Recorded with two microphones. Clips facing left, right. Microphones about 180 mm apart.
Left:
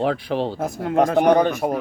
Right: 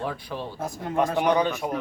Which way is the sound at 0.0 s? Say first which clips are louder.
Left 10 dB; 75° left (ahead or behind).